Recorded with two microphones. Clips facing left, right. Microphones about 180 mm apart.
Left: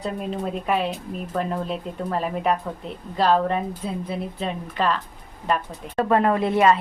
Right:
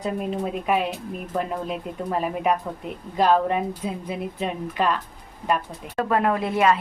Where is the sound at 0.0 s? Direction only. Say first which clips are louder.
Right 1 dB; 5° right (ahead or behind).